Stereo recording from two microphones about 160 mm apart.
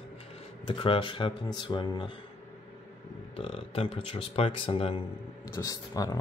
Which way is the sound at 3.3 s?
35° left (ahead or behind).